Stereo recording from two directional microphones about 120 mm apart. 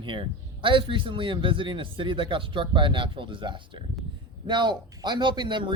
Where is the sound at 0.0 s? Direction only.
45° right (ahead or behind).